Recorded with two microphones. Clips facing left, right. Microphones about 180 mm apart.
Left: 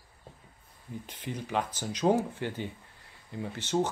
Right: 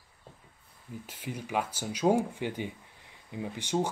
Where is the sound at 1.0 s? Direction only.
10° right (ahead or behind).